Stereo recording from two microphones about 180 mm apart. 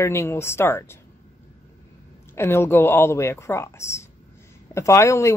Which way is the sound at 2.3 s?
15° left (ahead or behind).